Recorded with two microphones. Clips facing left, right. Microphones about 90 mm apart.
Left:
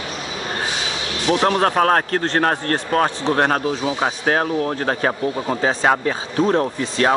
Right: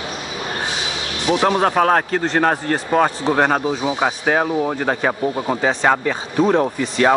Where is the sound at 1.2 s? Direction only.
20° right (ahead or behind).